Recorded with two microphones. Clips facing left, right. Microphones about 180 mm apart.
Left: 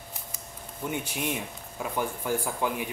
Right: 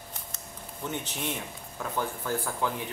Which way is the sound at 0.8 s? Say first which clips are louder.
Left 3 dB; 10° left (ahead or behind).